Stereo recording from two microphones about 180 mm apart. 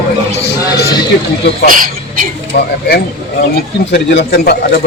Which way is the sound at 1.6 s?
50° right (ahead or behind).